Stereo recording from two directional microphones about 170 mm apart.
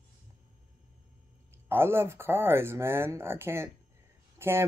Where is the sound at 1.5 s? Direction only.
15° right (ahead or behind).